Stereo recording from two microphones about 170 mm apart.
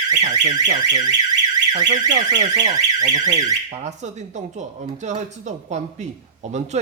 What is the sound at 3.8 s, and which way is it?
Speech, 45° right (ahead or behind).